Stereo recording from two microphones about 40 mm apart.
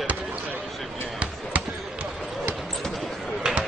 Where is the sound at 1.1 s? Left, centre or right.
Right.